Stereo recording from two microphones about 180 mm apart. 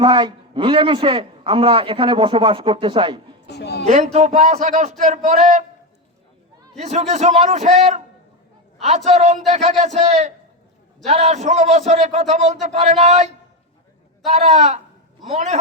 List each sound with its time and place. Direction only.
0.0 s a man's voice: 25° right (ahead or behind)
3.4 s a woman's voice: 70° left (ahead or behind)
3.8 s a man's voice: 40° right (ahead or behind)
6.7 s a man's voice: 40° right (ahead or behind)
9.0 s a man's voice: 40° right (ahead or behind)